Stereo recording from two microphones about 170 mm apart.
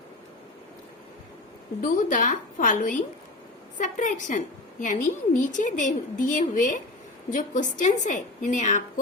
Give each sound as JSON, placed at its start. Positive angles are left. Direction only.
{"t": 1.8, "sound": "a woman's voice", "side_deg": 50}